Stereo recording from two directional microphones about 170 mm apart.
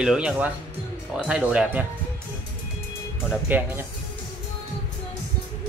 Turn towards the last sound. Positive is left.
turn(degrees=-10)  # may be behind; listen again after turning